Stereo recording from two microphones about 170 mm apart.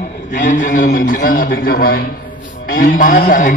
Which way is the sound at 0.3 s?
50° left (ahead or behind).